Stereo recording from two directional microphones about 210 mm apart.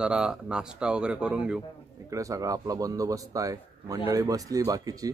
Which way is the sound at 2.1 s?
15° right (ahead or behind).